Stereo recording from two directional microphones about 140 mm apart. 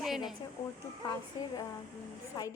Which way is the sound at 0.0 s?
Centre (ahead or behind).